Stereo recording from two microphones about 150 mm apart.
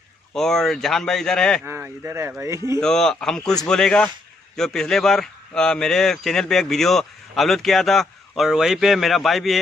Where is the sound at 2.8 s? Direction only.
5° left (ahead or behind).